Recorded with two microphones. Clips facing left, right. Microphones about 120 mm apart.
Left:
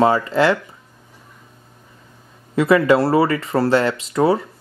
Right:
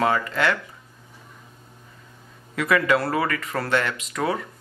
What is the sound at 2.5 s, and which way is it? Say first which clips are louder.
Speech: left 7 dB; 30° left (ahead or behind).